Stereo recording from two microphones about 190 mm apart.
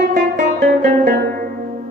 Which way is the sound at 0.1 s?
45° right (ahead or behind).